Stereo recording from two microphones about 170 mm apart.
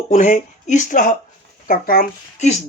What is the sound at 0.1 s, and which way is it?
Speech, 45° left (ahead or behind).